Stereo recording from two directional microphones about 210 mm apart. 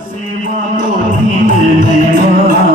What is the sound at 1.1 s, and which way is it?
Music, 35° right (ahead or behind).